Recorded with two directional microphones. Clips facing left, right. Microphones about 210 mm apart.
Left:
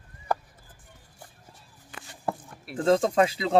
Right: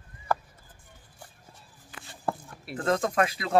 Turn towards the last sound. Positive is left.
turn(degrees=25)  # may be behind; listen again after turning